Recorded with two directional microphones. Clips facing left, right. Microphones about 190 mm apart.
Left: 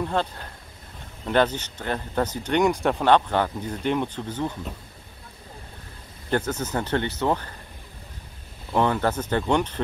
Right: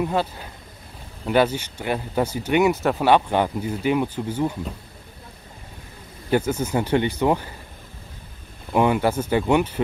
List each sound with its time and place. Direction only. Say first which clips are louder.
0.0 s speech: right 3 dB; 5° right (ahead or behind)
6.3 s speech: right 4 dB; 10° right (ahead or behind)
8.7 s speech: right 3 dB; 10° right (ahead or behind)